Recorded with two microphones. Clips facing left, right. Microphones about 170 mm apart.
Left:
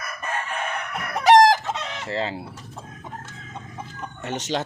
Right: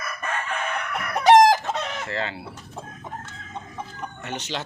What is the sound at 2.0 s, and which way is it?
Speech, 30° left (ahead or behind).